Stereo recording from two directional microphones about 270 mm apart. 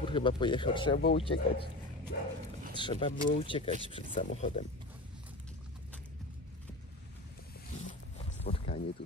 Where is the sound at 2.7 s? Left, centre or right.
Centre.